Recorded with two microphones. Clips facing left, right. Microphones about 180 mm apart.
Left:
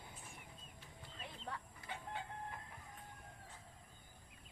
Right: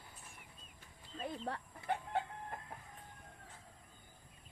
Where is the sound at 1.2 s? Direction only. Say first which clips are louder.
Right 8 dB; 35° right (ahead or behind).